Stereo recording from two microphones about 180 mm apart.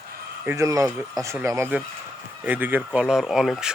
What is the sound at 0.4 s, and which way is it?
Speech, 15° right (ahead or behind).